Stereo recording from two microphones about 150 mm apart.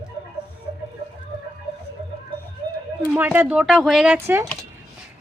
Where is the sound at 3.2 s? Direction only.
10° right (ahead or behind).